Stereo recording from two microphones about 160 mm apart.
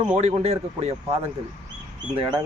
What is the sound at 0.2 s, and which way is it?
Speech, 40° right (ahead or behind).